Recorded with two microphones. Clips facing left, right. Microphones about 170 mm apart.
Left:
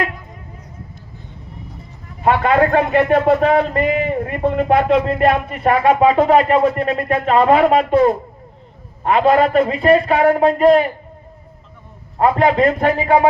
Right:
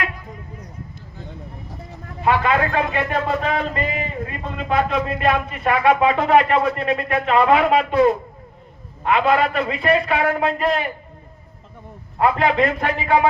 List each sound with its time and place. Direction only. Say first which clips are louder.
2.2 s a man's voice: left 4 dB; 50° left (ahead or behind)
12.2 s a man's voice: left 4 dB; 40° left (ahead or behind)